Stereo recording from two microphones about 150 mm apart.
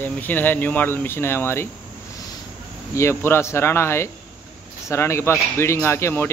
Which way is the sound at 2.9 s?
15° left (ahead or behind).